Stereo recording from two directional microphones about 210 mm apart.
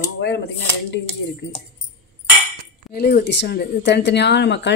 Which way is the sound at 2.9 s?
45° left (ahead or behind).